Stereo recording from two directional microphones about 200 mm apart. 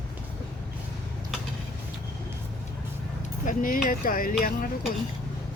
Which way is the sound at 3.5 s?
45° left (ahead or behind).